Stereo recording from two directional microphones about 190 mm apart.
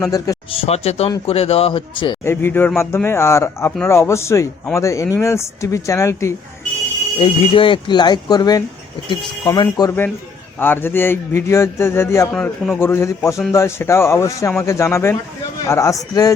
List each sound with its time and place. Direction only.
0.5 s a man's voice: 35° left (ahead or behind)
2.2 s speech: 10° left (ahead or behind)
7.2 s speech: 25° left (ahead or behind)
12.3 s a man's voice: centre (ahead or behind)
12.8 s speech: 10° left (ahead or behind)